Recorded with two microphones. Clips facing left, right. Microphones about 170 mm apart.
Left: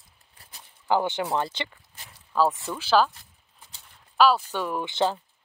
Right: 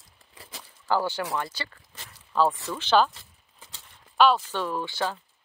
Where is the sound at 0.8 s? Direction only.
20° left (ahead or behind).